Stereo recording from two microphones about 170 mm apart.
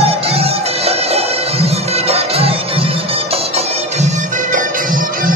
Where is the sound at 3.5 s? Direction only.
45° right (ahead or behind).